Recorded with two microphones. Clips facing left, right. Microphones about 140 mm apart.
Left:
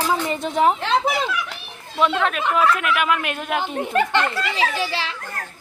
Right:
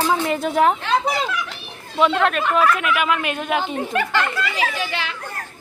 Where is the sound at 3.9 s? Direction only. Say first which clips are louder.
Left 4 dB; 30° left (ahead or behind).